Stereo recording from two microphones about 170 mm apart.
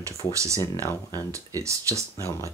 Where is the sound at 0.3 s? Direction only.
20° right (ahead or behind).